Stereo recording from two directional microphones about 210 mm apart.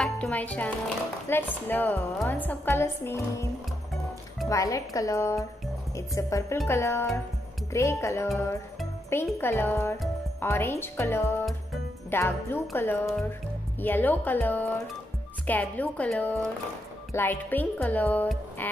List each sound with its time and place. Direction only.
0.0 s speech: 5° left (ahead or behind)
4.5 s speech: 15° left (ahead or behind)